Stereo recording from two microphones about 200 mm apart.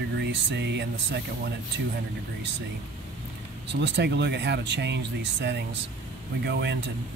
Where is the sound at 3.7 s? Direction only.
60° right (ahead or behind).